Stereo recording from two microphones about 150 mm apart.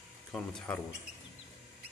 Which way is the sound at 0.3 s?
5° left (ahead or behind).